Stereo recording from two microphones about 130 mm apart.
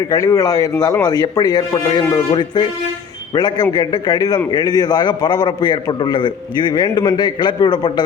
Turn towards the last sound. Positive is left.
turn(degrees=35)  # may be behind; listen again after turning